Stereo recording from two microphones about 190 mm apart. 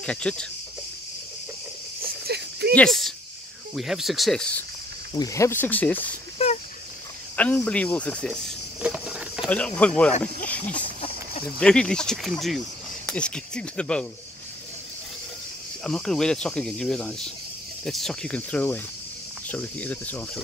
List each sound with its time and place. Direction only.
0.0 s speech: 5° left (ahead or behind)
2.0 s a sound: 55° right (ahead or behind)
2.7 s speech: 5° left (ahead or behind)
5.1 s speech: 20° left (ahead or behind)
6.3 s a sound: 35° left (ahead or behind)
7.3 s speech: 10° left (ahead or behind)
8.8 s a sound: 5° right (ahead or behind)
9.5 s speech: 5° left (ahead or behind)
15.8 s speech: 5° left (ahead or behind)